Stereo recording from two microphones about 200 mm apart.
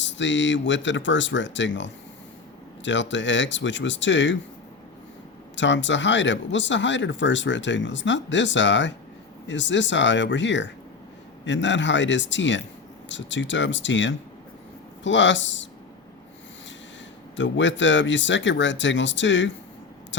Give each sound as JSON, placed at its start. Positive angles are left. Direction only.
{"t": 0.0, "sound": "speech", "side_deg": 65}
{"t": 5.5, "sound": "speech", "side_deg": 65}
{"t": 17.3, "sound": "speech", "side_deg": 65}